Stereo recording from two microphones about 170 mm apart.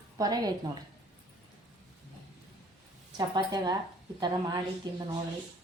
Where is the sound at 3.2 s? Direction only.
25° right (ahead or behind).